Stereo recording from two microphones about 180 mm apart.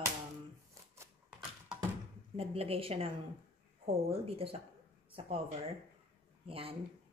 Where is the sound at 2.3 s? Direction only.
35° right (ahead or behind).